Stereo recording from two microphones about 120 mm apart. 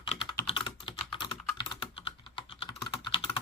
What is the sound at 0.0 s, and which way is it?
Typing, 45° left (ahead or behind).